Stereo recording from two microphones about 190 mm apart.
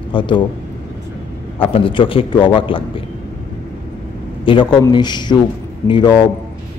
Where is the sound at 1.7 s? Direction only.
25° left (ahead or behind).